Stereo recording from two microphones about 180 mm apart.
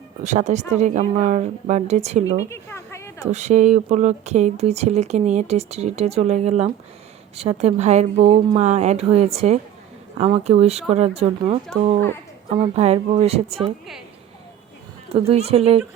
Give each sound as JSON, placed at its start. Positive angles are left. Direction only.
{"t": 0.2, "sound": "speech", "side_deg": -40}
{"t": 2.4, "sound": "a sound", "side_deg": 15}
{"t": 3.3, "sound": "speech", "side_deg": -40}
{"t": 12.5, "sound": "speech", "side_deg": -35}
{"t": 15.1, "sound": "speech", "side_deg": -35}